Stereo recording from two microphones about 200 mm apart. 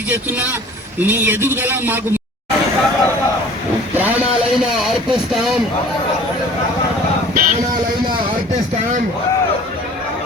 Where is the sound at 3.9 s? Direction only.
10° right (ahead or behind).